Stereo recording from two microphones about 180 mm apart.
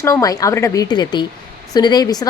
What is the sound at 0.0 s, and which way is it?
A woman's voice, 20° left (ahead or behind).